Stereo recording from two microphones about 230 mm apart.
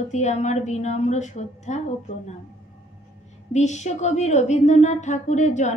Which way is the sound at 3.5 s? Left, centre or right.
Left.